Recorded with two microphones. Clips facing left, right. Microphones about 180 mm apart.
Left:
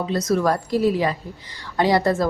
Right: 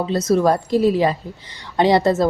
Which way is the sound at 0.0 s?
30° right (ahead or behind).